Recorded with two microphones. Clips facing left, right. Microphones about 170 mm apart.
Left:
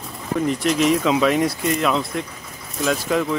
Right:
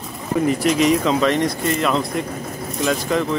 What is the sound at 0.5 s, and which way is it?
Speech, centre (ahead or behind).